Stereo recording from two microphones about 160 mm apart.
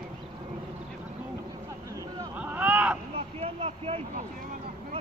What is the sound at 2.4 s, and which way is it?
Hubbub, 10° right (ahead or behind).